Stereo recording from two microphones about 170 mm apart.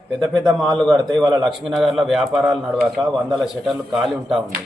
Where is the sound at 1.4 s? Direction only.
Centre (ahead or behind).